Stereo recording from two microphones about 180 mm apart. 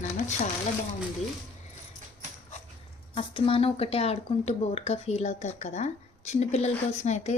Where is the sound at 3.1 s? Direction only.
30° left (ahead or behind).